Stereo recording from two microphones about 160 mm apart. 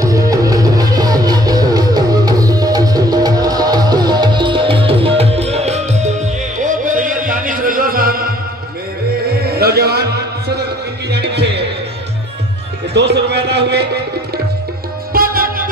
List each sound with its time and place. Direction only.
0.0 s music: 20° right (ahead or behind); by 8.3 s 65° right (ahead or behind)
9.6 s a sound: 75° right (ahead or behind)
11.1 s music: 90° right
12.9 s music: 90° right
15.1 s music: 65° right (ahead or behind)